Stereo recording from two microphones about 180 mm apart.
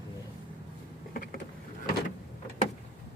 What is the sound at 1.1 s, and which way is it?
Vehicle, 55° left (ahead or behind).